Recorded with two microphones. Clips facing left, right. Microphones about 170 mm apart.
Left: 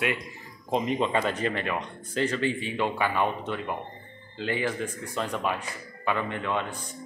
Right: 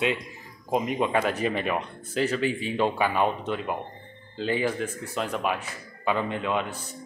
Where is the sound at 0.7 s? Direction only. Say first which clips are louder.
Right 1 dB; 10° right (ahead or behind).